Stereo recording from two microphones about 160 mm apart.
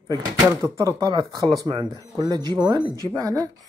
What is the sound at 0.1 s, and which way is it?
Speech, 20° right (ahead or behind).